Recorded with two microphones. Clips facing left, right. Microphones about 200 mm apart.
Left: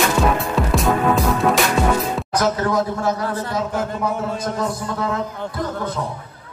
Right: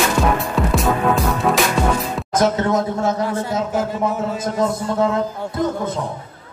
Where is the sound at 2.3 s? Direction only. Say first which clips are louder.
Right 3 dB; 25° right (ahead or behind).